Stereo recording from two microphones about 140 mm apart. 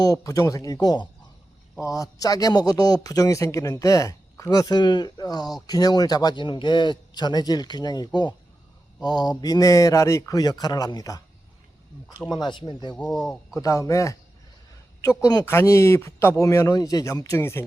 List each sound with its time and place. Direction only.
0.0 s a man's voice: 25° left (ahead or behind)
12.3 s speech: 30° left (ahead or behind)
13.0 s speech: 5° left (ahead or behind)
13.5 s a man's voice: 25° left (ahead or behind)